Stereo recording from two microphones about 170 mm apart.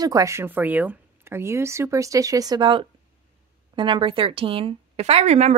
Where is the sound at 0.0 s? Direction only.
20° right (ahead or behind).